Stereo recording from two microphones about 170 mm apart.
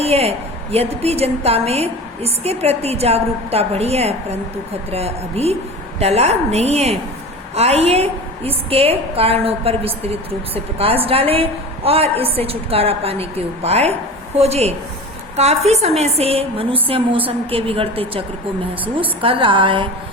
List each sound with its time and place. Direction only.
0.0 s a woman's voice: 35° right (ahead or behind)